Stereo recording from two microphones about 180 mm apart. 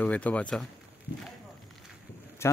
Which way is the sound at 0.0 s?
5° left (ahead or behind).